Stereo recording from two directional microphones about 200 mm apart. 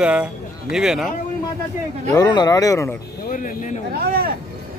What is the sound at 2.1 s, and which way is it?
Speech, 20° left (ahead or behind).